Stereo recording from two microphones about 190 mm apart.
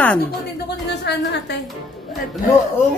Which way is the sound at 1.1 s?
60° left (ahead or behind).